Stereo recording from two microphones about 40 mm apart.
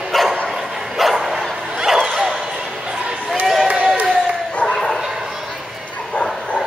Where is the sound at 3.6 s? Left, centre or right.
Right.